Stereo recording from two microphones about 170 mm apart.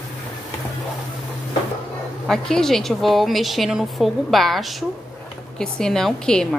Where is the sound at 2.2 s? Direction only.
Centre (ahead or behind).